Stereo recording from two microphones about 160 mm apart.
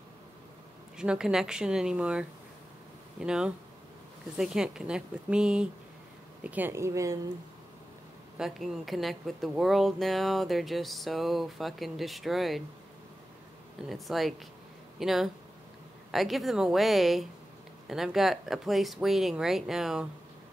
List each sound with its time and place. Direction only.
0.9 s a woman's voice: 5° right (ahead or behind)
8.4 s a woman's voice: centre (ahead or behind)
13.8 s a woman's voice: centre (ahead or behind)